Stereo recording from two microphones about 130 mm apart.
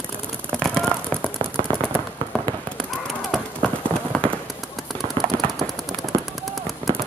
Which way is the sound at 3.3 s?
Centre (ahead or behind).